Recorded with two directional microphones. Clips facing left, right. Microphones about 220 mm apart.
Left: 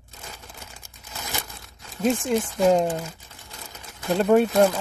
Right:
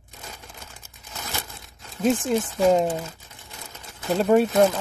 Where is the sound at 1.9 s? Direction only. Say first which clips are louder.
Right 1 dB; centre (ahead or behind).